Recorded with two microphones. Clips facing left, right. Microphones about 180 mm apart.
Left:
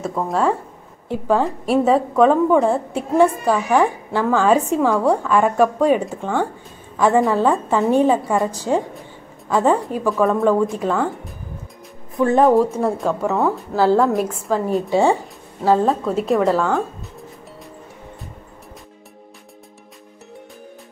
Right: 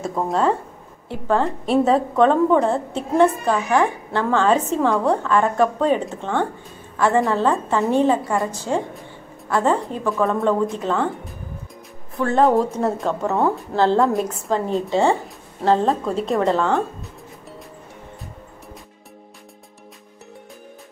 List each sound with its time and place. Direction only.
0.3 s a woman's voice: centre (ahead or behind)
1.0 s a woman's voice: 15° left (ahead or behind)
7.7 s a woman's voice: 15° left (ahead or behind)
12.2 s a woman's voice: 15° left (ahead or behind)
12.4 s a woman's voice: 5° left (ahead or behind)